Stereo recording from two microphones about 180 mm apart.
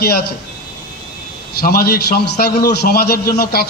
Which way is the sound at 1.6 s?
55° left (ahead or behind).